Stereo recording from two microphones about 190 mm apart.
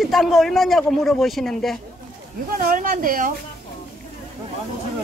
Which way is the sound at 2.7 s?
45° right (ahead or behind).